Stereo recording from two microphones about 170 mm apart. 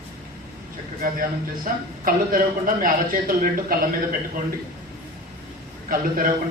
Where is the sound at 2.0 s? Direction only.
55° right (ahead or behind).